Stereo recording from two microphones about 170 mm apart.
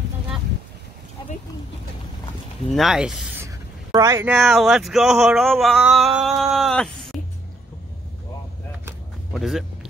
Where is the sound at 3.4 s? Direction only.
20° right (ahead or behind).